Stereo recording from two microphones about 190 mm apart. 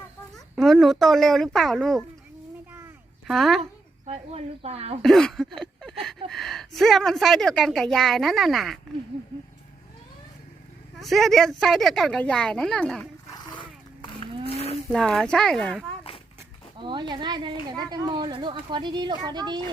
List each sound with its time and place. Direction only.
0.3 s speech: centre (ahead or behind)
3.2 s speech: centre (ahead or behind)
3.6 s a child's voice: 35° right (ahead or behind)
5.0 s speech: centre (ahead or behind)
11.0 s speech: centre (ahead or behind)
13.3 s a sound: 25° left (ahead or behind)
14.4 s livestock: 30° left (ahead or behind)
14.9 s speech: 5° left (ahead or behind)
16.7 s speech: 25° right (ahead or behind)